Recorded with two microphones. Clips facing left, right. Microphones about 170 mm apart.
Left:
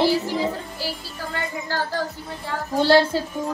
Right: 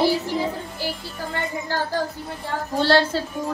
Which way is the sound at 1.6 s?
20° right (ahead or behind).